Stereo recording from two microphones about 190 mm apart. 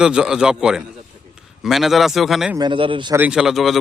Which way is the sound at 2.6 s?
25° right (ahead or behind).